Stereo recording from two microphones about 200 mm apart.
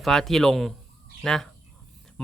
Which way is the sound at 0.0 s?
Centre (ahead or behind).